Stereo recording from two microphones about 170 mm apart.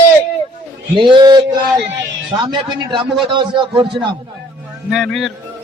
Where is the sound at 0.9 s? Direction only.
30° right (ahead or behind).